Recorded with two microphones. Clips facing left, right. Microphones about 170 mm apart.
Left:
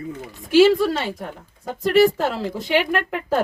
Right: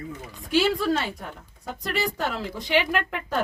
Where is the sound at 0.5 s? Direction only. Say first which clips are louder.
Left 8 dB; 90° left.